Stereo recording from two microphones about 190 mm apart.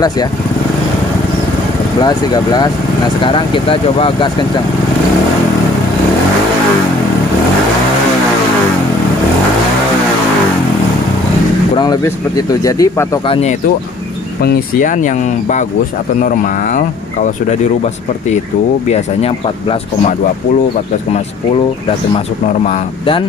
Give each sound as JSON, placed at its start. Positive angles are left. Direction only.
{"t": 2.0, "sound": "speech", "side_deg": 20}
{"t": 11.7, "sound": "speech", "side_deg": 20}
{"t": 13.3, "sound": "speech", "side_deg": 35}
{"t": 18.9, "sound": "speech", "side_deg": 35}
{"t": 22.1, "sound": "speech", "side_deg": 35}